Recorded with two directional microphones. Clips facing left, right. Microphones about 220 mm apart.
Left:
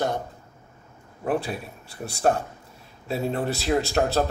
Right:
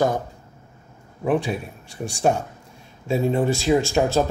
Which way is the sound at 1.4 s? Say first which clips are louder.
Right 5 dB; 5° left (ahead or behind).